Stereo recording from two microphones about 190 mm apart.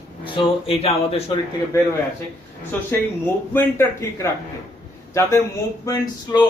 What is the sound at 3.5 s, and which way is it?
Speech, 15° left (ahead or behind).